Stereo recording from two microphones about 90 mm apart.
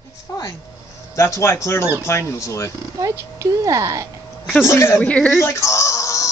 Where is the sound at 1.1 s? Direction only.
30° left (ahead or behind).